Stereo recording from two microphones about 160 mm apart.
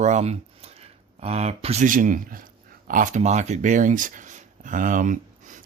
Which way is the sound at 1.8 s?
55° right (ahead or behind).